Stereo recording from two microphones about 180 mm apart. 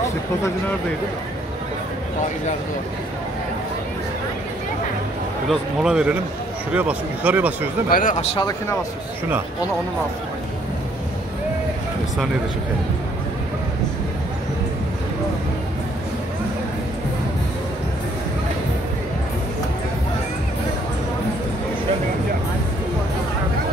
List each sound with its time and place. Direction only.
5.5 s speech: 5° right (ahead or behind)
7.9 s speech: 45° left (ahead or behind)
8.4 s speech: 20° left (ahead or behind)